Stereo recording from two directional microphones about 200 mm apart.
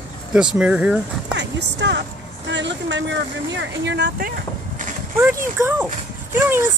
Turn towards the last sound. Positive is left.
turn(degrees=-10)  # may be behind; listen again after turning